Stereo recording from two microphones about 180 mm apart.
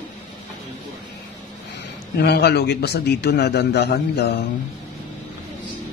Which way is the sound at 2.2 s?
65° left (ahead or behind).